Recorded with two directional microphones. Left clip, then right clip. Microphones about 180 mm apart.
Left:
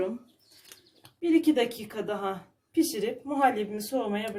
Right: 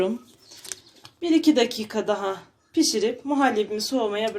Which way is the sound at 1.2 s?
40° right (ahead or behind).